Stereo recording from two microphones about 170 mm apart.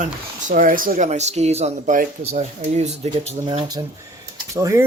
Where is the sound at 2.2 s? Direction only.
40° right (ahead or behind).